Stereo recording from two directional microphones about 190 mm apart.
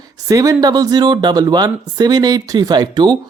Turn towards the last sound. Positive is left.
turn(degrees=-20)  # may be behind; listen again after turning